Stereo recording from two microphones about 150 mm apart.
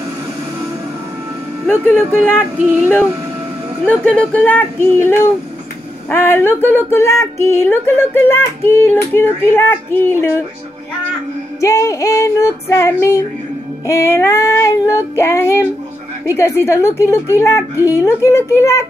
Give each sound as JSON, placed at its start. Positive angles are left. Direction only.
{"t": 1.7, "sound": "speech", "side_deg": 15}
{"t": 3.8, "sound": "speech", "side_deg": 10}
{"t": 11.6, "sound": "female singing", "side_deg": 20}
{"t": 13.8, "sound": "speech", "side_deg": 15}
{"t": 17.8, "sound": "female singing", "side_deg": 20}